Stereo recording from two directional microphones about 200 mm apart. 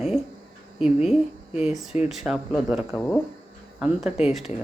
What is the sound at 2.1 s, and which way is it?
Speech, centre (ahead or behind).